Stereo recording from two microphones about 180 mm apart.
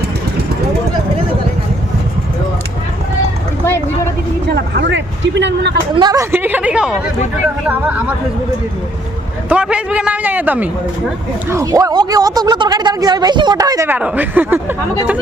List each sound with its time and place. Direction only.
4.4 s a sound: 75° right (ahead or behind)
6.0 s a man's voice: 20° right (ahead or behind)
9.5 s a man's voice: 5° right (ahead or behind)